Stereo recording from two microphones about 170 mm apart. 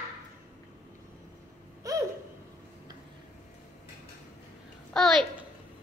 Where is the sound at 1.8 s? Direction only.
20° right (ahead or behind).